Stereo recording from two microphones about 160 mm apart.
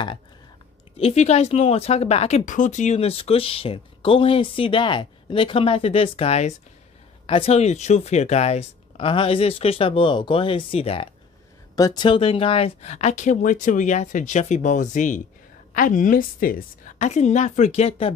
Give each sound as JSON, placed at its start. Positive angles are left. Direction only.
{"t": 0.9, "sound": "speech", "side_deg": 40}
{"t": 11.7, "sound": "speech", "side_deg": 25}